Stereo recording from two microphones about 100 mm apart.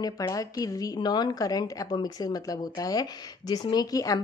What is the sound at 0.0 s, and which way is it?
Speech, 35° left (ahead or behind).